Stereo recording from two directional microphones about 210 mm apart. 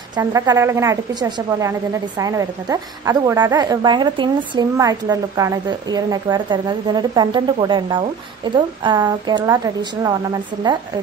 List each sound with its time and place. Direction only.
0.1 s a woman's voice: 15° right (ahead or behind)